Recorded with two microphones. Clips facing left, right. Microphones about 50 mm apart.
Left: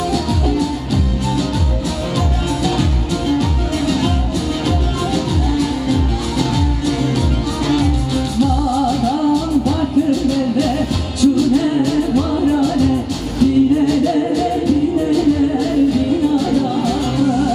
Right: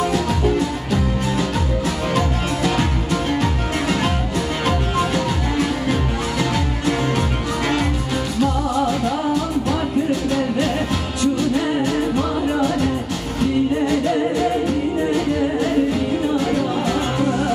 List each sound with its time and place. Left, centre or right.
0.1 s music: right
2.1 s music: right
7.6 s music: right
11.1 s music: right